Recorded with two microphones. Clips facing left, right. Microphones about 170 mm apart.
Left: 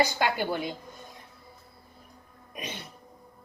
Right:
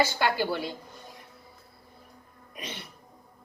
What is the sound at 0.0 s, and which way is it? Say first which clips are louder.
Speech: even; 20° left (ahead or behind).